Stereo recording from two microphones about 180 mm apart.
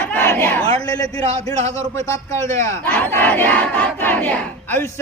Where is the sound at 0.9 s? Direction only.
20° left (ahead or behind).